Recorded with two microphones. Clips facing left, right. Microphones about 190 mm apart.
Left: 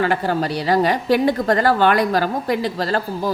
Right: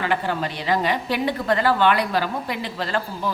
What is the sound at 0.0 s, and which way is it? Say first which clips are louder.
A woman's voice: left 5 dB; 40° left (ahead or behind).